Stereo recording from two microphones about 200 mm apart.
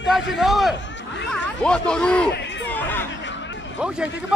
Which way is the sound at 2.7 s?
10° left (ahead or behind).